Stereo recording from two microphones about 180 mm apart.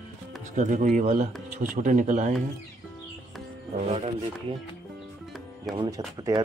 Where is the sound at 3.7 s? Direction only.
40° right (ahead or behind).